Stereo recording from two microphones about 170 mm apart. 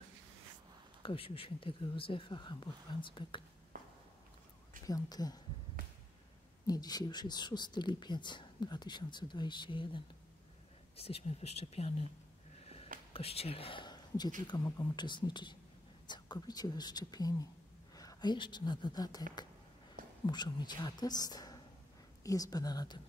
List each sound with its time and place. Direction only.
1.0 s speech: 30° left (ahead or behind)
4.8 s speech: 20° left (ahead or behind)
6.7 s speech: 25° left (ahead or behind)
13.1 s speech: 35° left (ahead or behind)
20.2 s speech: 25° left (ahead or behind)